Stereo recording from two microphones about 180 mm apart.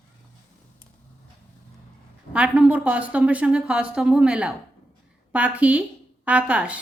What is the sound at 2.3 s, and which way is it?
A woman's voice, 5° right (ahead or behind).